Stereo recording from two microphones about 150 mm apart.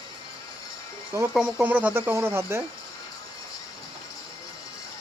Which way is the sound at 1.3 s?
5° right (ahead or behind).